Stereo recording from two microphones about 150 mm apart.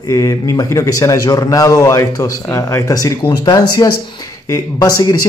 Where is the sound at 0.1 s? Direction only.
25° left (ahead or behind).